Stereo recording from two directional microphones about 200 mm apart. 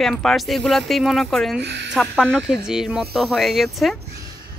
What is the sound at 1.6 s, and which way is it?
Speech, 60° right (ahead or behind).